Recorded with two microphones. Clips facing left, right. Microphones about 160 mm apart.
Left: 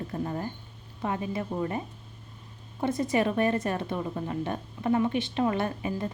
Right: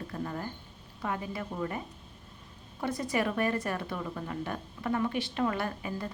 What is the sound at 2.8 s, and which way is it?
A woman's voice, 25° left (ahead or behind).